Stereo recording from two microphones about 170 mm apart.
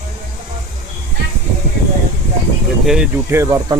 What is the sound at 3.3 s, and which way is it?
Speech, 15° right (ahead or behind).